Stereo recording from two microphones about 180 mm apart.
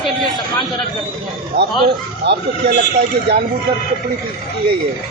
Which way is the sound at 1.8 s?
60° right (ahead or behind).